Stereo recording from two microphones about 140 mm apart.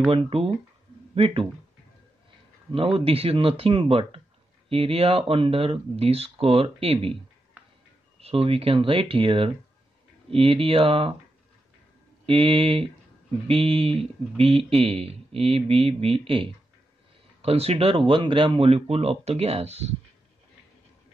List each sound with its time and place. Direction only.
0.1 s speech: 45° right (ahead or behind)
3.0 s speech: 45° right (ahead or behind)
8.2 s speech: 45° right (ahead or behind)
12.3 s speech: 40° right (ahead or behind)